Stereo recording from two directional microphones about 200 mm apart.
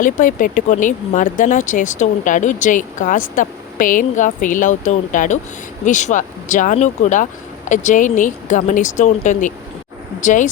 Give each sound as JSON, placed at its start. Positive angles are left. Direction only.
{"t": 0.0, "sound": "speech", "side_deg": 40}